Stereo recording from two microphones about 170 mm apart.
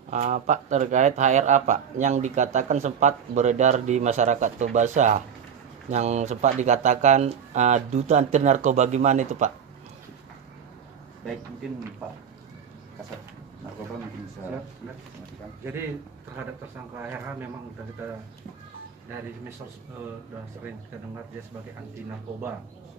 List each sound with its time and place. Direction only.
0.1 s speech: 45° right (ahead or behind)
15.6 s speech: 15° right (ahead or behind)